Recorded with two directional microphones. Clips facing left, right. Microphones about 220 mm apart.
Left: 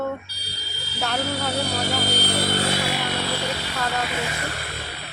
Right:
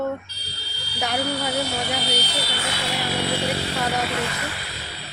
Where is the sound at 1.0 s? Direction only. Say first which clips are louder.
Right 1 dB; 15° right (ahead or behind).